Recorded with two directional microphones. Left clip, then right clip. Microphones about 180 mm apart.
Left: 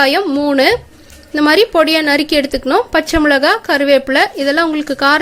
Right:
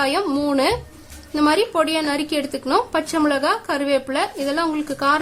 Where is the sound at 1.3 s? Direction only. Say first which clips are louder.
Left 7 dB; 25° left (ahead or behind).